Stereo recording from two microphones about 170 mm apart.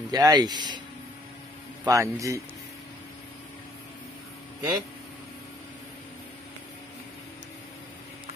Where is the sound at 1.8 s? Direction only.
20° right (ahead or behind).